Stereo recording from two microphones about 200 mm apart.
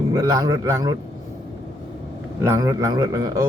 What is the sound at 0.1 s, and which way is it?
Speech, 20° right (ahead or behind).